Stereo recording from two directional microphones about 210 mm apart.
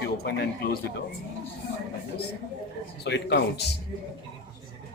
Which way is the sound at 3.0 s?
55° left (ahead or behind).